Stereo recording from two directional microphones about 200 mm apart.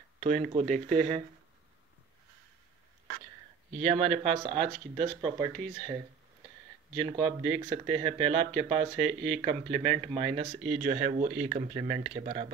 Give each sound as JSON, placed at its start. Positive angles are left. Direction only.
{"t": 0.2, "sound": "speech", "side_deg": -30}
{"t": 3.7, "sound": "speech", "side_deg": -30}
{"t": 7.0, "sound": "speech", "side_deg": -25}
{"t": 9.0, "sound": "speech", "side_deg": 0}
{"t": 9.4, "sound": "speech", "side_deg": -30}
{"t": 10.8, "sound": "speech", "side_deg": -35}